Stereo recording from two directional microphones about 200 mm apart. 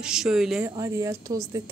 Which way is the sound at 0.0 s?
5° right (ahead or behind).